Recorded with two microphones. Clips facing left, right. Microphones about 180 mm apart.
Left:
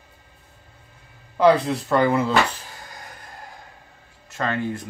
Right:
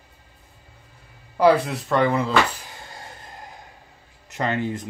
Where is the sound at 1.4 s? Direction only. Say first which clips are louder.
Left 1 dB; centre (ahead or behind).